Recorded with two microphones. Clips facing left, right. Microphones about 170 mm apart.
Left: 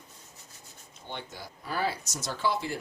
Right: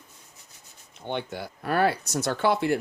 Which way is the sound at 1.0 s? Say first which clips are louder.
Right 9 dB; 60° right (ahead or behind).